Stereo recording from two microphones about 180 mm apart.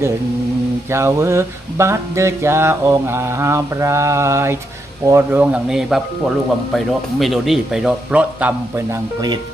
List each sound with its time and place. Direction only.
0.8 s music: 15° right (ahead or behind)
5.0 s speech: 15° right (ahead or behind)